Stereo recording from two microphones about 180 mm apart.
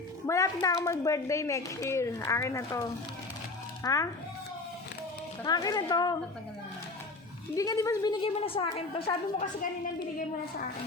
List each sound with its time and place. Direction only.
0.3 s a woman's voice: 20° left (ahead or behind)
3.8 s a woman's voice: 15° left (ahead or behind)
5.4 s a woman's voice: 20° left (ahead or behind)
7.5 s a woman's voice: 20° left (ahead or behind)